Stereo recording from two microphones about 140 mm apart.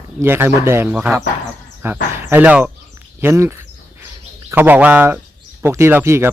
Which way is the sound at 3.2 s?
15° right (ahead or behind).